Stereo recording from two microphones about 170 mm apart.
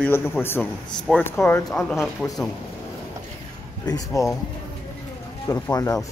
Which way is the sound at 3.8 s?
20° left (ahead or behind).